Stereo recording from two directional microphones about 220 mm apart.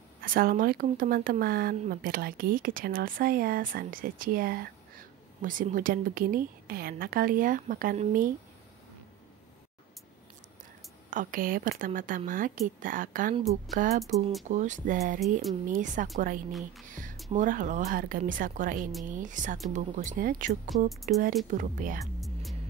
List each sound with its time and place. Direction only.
0.2 s speech: 40° right (ahead or behind)
11.1 s speech: 40° right (ahead or behind)
17.0 s music: 40° right (ahead or behind)
17.3 s speech: 35° right (ahead or behind)
20.9 s speech: centre (ahead or behind)
21.5 s speech: 35° right (ahead or behind)
22.2 s music: centre (ahead or behind)